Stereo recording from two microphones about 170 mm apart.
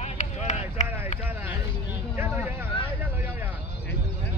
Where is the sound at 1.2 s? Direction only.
10° right (ahead or behind).